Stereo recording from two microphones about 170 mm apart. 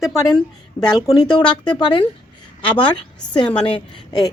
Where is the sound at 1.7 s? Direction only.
25° left (ahead or behind).